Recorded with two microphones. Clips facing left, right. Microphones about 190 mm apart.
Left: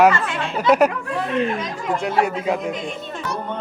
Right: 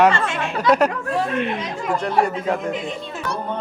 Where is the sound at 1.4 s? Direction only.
45° left (ahead or behind).